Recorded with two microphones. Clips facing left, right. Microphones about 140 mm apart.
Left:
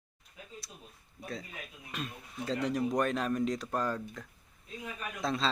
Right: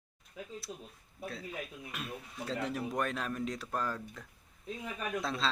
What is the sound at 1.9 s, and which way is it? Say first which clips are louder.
Speech: left 3 dB; 5° right (ahead or behind).